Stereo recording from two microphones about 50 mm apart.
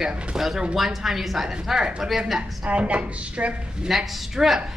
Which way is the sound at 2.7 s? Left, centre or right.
Right.